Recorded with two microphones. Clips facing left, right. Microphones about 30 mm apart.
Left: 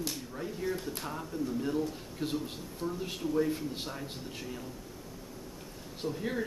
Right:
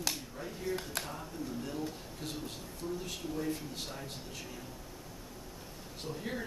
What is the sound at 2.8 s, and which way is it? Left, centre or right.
Speech, centre.